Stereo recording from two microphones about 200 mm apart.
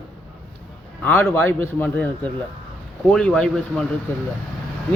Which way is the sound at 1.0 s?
10° left (ahead or behind).